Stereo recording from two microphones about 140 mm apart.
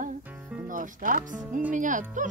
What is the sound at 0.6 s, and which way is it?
Speech, 70° right (ahead or behind).